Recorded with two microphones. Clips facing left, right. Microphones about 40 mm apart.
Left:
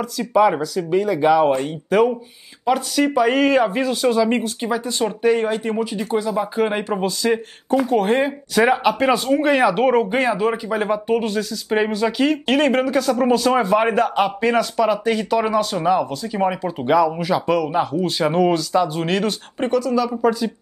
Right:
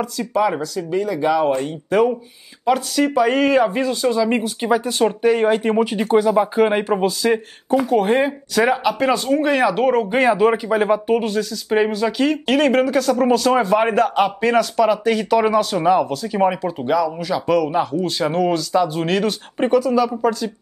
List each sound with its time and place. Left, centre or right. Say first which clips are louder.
0.2 s speech: left 4 dB; centre
4.6 s speech: right 4 dB; centre
5.2 s speech: even; centre
5.8 s speech: right 5 dB; right
6.1 s speech: right 6 dB; centre
6.5 s speech: right 4 dB; centre
10.2 s speech: right 4 dB; centre
16.8 s speech: left 3 dB; centre
20.1 s speech: left 1 dB; centre